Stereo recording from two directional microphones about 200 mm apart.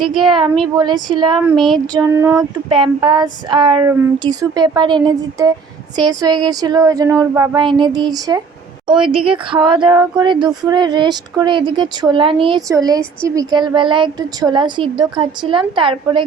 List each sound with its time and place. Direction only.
0.0 s speech: centre (ahead or behind)
0.3 s speech: 25° right (ahead or behind)
1.5 s speech: centre (ahead or behind)
1.9 s child singing: 15° right (ahead or behind)
2.6 s speech: 25° right (ahead or behind)